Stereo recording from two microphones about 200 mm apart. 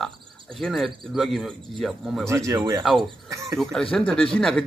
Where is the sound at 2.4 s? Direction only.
15° right (ahead or behind).